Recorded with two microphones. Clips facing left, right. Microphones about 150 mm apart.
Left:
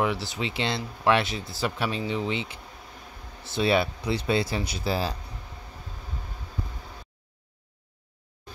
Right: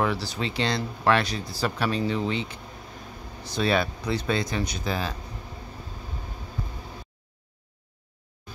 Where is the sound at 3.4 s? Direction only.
25° left (ahead or behind).